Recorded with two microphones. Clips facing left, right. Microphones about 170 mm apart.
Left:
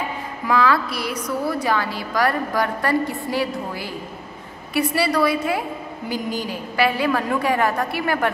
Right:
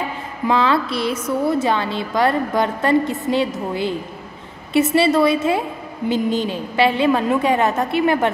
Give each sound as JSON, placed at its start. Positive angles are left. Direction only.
{"t": 0.5, "sound": "a woman's voice", "side_deg": -25}